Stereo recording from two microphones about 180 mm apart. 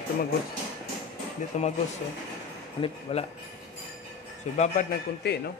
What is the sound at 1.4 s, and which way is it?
Speech, 45° left (ahead or behind).